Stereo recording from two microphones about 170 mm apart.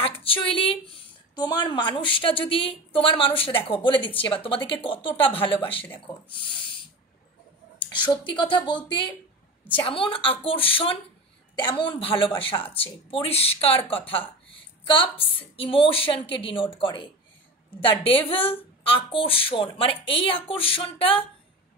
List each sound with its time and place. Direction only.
0.5 s speech: 30° left (ahead or behind)
7.8 s a sound: 25° left (ahead or behind)
8.3 s speech: 30° left (ahead or behind)
9.8 s a woman's voice: 30° left (ahead or behind)